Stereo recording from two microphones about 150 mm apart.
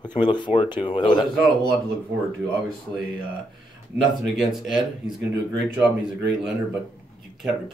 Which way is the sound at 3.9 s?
Centre (ahead or behind).